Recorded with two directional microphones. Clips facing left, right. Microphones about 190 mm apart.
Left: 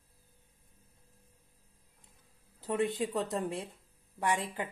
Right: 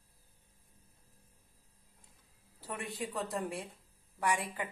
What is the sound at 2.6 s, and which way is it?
A woman's voice, 20° left (ahead or behind).